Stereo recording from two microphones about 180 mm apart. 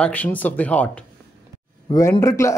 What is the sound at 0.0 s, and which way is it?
A man's voice, 10° left (ahead or behind).